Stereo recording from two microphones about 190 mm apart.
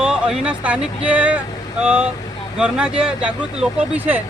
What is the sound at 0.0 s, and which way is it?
Speech, 5° right (ahead or behind).